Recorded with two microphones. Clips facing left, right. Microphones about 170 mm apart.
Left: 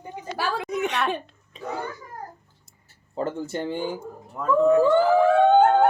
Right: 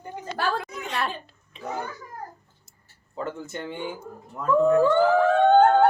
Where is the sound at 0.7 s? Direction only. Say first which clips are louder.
Left 10 dB; 20° left (ahead or behind).